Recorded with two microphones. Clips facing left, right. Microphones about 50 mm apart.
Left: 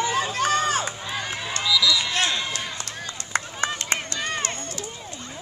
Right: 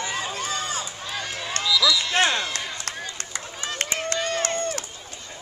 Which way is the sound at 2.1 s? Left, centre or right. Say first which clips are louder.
Right 3 dB; right.